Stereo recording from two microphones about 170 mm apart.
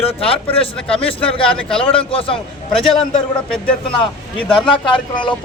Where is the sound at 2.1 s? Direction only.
35° left (ahead or behind).